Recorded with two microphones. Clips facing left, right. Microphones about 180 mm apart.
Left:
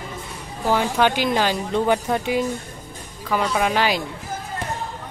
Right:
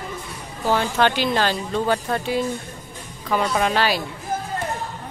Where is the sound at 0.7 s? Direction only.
10° left (ahead or behind).